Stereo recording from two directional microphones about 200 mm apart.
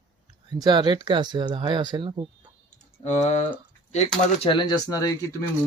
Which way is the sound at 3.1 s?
35° left (ahead or behind).